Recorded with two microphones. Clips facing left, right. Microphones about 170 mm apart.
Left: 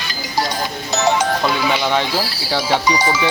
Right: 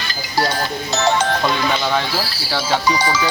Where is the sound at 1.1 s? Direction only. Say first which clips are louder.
Even; 5° left (ahead or behind).